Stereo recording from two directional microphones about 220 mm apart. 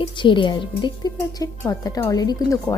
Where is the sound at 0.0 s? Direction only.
20° left (ahead or behind).